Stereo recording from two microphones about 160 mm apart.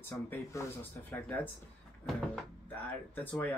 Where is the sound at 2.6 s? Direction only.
10° left (ahead or behind).